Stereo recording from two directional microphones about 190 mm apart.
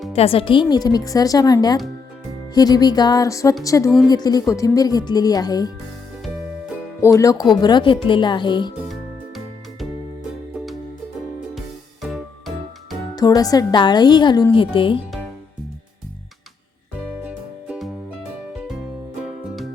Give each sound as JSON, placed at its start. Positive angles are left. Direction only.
{"t": 0.1, "sound": "a woman's voice", "side_deg": 30}
{"t": 7.0, "sound": "a woman's voice", "side_deg": 15}
{"t": 13.1, "sound": "a woman's voice", "side_deg": 20}
{"t": 17.2, "sound": "music", "side_deg": -5}